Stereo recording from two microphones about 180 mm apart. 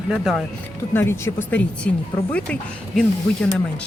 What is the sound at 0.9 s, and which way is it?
Speech, 15° left (ahead or behind).